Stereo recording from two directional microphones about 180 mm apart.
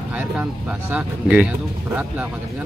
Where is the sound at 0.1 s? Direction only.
5° right (ahead or behind).